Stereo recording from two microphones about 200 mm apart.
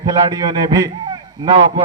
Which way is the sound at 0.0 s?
20° right (ahead or behind).